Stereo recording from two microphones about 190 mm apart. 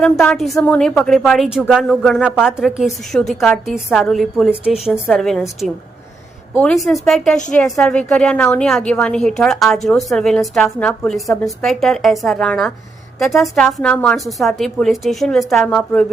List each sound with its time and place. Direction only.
0.0 s speech: centre (ahead or behind)